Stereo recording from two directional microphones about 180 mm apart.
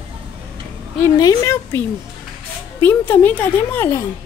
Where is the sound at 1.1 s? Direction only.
20° left (ahead or behind).